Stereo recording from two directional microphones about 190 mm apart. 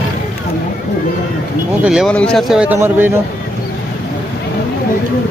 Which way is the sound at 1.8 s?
5° right (ahead or behind).